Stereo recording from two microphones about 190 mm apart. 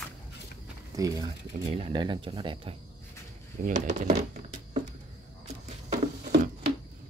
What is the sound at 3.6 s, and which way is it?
Speech, 40° right (ahead or behind).